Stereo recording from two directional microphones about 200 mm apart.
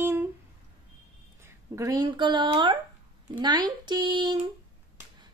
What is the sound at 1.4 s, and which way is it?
Speech, 15° right (ahead or behind).